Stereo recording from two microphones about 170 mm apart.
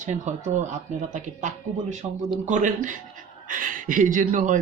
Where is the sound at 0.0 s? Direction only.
45° right (ahead or behind).